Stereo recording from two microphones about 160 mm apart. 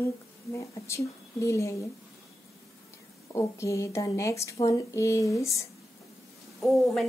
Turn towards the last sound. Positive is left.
turn(degrees=0)  # may be behind; listen again after turning